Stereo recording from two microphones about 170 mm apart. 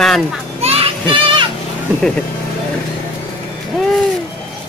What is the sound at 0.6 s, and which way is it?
Music, 35° right (ahead or behind).